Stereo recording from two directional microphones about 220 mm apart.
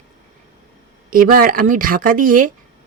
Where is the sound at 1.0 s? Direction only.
40° right (ahead or behind).